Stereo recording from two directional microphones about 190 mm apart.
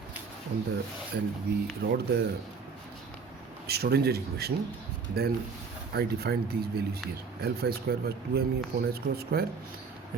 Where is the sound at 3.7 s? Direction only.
55° right (ahead or behind).